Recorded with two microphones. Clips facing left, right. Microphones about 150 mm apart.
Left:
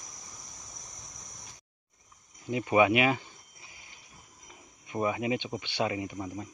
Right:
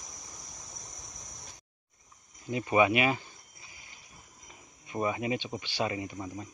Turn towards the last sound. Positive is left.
turn(degrees=10)  # may be behind; listen again after turning